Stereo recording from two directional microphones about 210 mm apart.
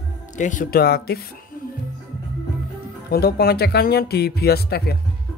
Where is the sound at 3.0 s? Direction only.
45° left (ahead or behind).